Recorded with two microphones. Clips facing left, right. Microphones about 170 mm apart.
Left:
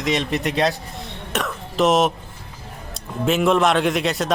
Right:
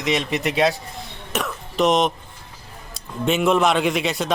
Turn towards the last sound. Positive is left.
turn(degrees=0)  # may be behind; listen again after turning